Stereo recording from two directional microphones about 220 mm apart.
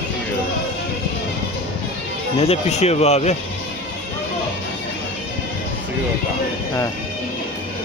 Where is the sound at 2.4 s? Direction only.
30° left (ahead or behind).